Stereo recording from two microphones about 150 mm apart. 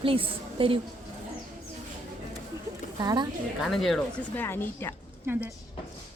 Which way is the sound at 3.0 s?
25° right (ahead or behind).